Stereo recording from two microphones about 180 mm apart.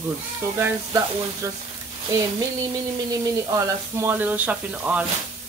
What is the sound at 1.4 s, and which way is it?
Speech, 15° right (ahead or behind).